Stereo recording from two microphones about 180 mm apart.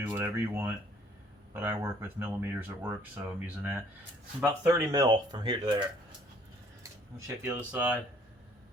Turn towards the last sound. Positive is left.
turn(degrees=-5)  # may be behind; listen again after turning